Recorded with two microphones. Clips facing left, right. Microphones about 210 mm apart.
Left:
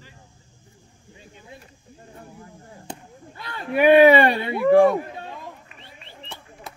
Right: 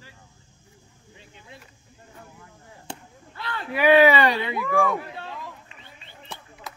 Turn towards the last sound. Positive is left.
turn(degrees=90)